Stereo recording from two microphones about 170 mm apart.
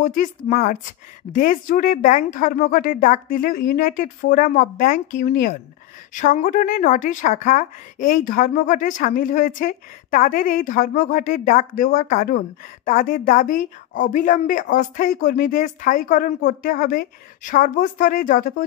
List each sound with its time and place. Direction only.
0.0 s speech: 50° left (ahead or behind)
6.1 s speech: 45° left (ahead or behind)